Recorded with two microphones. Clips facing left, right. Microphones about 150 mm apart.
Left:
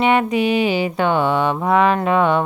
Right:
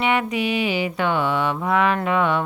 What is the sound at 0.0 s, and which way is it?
Speech, 35° left (ahead or behind).